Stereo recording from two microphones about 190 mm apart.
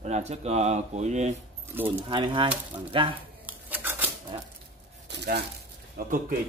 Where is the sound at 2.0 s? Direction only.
25° right (ahead or behind).